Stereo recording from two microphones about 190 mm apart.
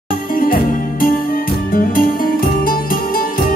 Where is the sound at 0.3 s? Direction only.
50° left (ahead or behind).